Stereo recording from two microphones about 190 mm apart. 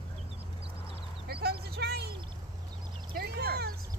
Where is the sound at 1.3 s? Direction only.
55° right (ahead or behind).